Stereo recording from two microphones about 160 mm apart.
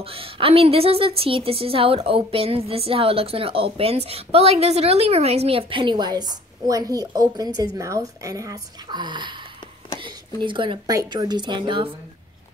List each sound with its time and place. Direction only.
0.0 s a woman's voice: 35° right (ahead or behind)